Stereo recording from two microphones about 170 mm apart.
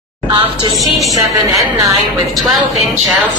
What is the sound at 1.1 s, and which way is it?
Speech, 20° right (ahead or behind).